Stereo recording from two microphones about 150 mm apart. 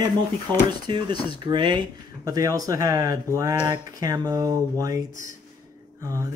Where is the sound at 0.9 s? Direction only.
30° right (ahead or behind).